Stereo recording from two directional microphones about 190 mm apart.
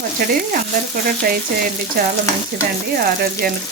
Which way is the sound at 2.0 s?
55° right (ahead or behind).